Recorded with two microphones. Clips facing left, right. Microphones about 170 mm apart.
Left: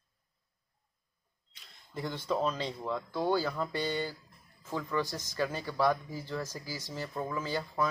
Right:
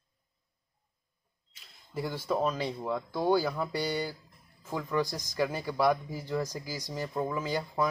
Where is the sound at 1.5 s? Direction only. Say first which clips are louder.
Right 3 dB; 5° right (ahead or behind).